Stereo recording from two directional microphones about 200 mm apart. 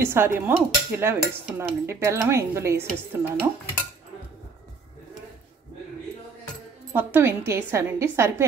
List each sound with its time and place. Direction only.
0.0 s dishes: 10° right (ahead or behind)
6.9 s dishes: 10° right (ahead or behind)